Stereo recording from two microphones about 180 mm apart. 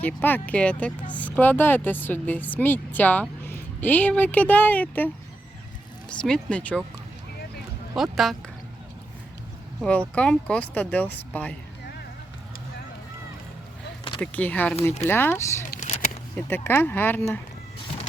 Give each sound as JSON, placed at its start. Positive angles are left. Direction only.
{"t": 0.0, "sound": "speech", "side_deg": 10}
{"t": 7.9, "sound": "speech", "side_deg": 0}
{"t": 10.2, "sound": "speech", "side_deg": 5}
{"t": 14.2, "sound": "speech", "side_deg": 10}
{"t": 15.8, "sound": "a sound", "side_deg": 45}
{"t": 16.3, "sound": "speech", "side_deg": 10}